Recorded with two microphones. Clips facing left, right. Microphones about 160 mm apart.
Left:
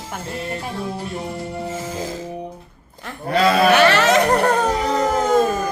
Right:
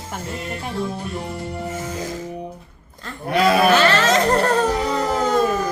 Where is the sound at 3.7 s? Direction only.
65° left (ahead or behind).